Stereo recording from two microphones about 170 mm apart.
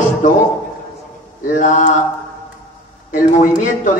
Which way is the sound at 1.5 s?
45° left (ahead or behind).